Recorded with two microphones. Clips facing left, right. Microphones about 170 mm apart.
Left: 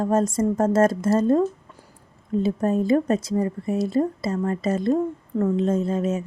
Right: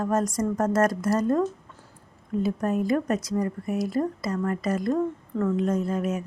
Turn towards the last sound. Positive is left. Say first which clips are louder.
# left 3 dB
turn(degrees=25)  # may be behind; listen again after turning